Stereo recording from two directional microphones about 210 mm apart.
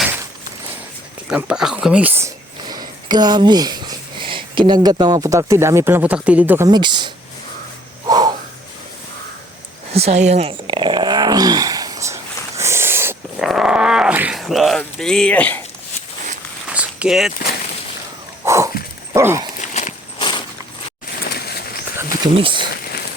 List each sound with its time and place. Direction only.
1.3 s speech: 5° right (ahead or behind)
6.7 s speech: 20° right (ahead or behind)
8.0 s snort: 20° right (ahead or behind)
9.9 s dog: 30° right (ahead or behind); by 15.6 s 5° left (ahead or behind)
16.6 s a sound: 5° right (ahead or behind)
18.4 s a sound: 15° right (ahead or behind)
19.1 s dog: 15° right (ahead or behind)
19.6 s walk: 35° left (ahead or behind)
20.1 s walk: 20° left (ahead or behind)
21.3 s bird: 50° left (ahead or behind)
22.4 s speech: 25° right (ahead or behind)